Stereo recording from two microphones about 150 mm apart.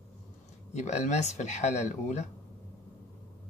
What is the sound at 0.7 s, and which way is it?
Speech, 50° left (ahead or behind).